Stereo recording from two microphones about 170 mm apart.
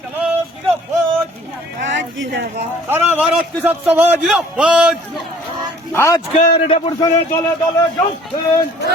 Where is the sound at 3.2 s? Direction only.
5° right (ahead or behind).